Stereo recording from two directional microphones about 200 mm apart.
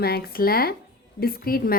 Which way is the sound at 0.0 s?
50° left (ahead or behind).